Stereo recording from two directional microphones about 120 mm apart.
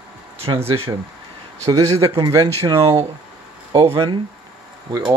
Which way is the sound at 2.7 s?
45° right (ahead or behind).